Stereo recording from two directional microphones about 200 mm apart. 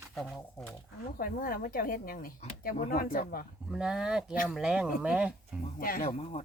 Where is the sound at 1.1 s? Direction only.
45° left (ahead or behind).